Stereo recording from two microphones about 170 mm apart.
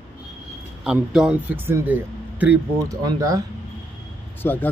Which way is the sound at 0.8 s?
5° right (ahead or behind).